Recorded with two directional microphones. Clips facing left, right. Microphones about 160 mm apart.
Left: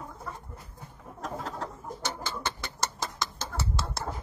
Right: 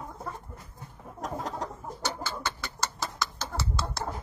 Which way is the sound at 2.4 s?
20° left (ahead or behind).